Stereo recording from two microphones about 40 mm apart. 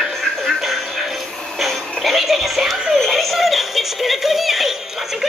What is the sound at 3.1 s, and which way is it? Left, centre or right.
Synthetic singing, centre.